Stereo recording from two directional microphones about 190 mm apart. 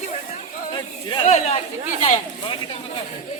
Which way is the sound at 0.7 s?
25° left (ahead or behind).